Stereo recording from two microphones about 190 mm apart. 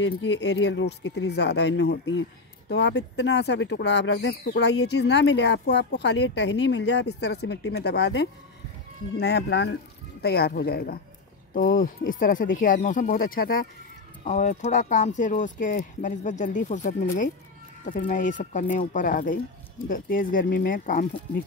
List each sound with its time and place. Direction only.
0.0 s speech: 70° left (ahead or behind); by 21.1 s 45° left (ahead or behind)